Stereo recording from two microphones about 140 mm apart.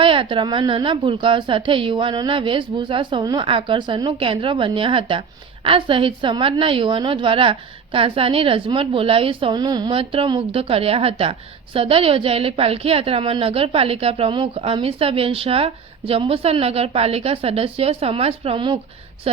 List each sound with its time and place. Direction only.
0.0 s a woman's voice: 40° right (ahead or behind)